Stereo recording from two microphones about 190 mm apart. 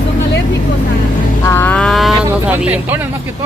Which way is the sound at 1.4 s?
10° left (ahead or behind).